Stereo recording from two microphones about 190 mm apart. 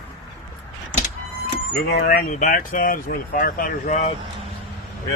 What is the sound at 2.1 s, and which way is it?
Speech, 45° left (ahead or behind).